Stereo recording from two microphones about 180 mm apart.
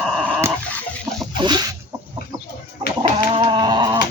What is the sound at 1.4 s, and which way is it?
Chicken, 25° right (ahead or behind).